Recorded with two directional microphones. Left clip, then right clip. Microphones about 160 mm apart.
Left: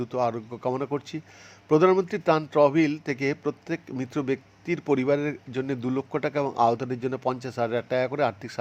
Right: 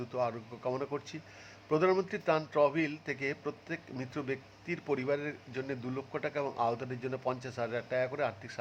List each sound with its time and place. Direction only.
0.0 s speech: 30° left (ahead or behind)